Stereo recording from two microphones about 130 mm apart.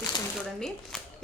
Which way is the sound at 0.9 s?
Centre (ahead or behind).